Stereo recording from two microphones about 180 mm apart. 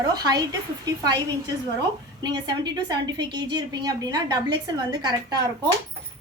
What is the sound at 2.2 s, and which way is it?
A woman's voice, 25° right (ahead or behind).